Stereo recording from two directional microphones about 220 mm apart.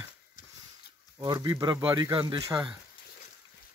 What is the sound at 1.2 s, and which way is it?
Speech, 20° right (ahead or behind).